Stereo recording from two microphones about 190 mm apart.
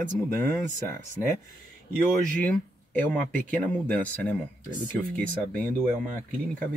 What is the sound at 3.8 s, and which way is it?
Speech, 10° left (ahead or behind).